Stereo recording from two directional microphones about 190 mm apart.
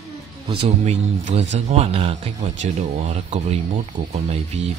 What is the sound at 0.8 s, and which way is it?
Speech, 35° right (ahead or behind).